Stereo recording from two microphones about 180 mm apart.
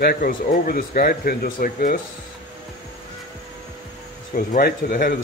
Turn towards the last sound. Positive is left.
turn(degrees=55)  # may be behind; listen again after turning